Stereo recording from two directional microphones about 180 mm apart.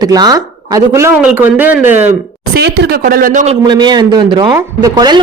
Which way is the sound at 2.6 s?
60° right (ahead or behind).